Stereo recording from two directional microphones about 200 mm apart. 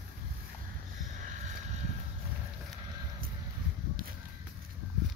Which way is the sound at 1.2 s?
35° right (ahead or behind).